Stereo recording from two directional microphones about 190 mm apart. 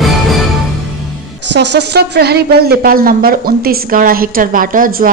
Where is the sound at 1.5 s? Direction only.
65° right (ahead or behind).